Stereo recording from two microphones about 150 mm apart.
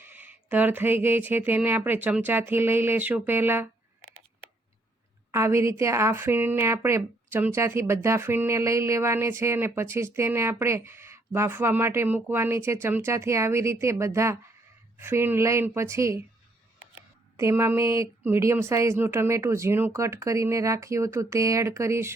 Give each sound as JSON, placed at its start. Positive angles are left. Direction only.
{"t": 0.0, "sound": "speech", "side_deg": -10}
{"t": 5.3, "sound": "speech", "side_deg": -20}
{"t": 17.3, "sound": "speech", "side_deg": -15}